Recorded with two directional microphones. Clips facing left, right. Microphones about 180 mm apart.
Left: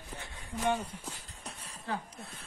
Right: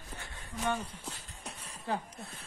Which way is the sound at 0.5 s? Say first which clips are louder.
Left 3 dB; 10° left (ahead or behind).